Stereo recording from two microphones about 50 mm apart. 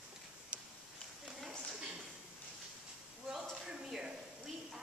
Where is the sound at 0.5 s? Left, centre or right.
Right.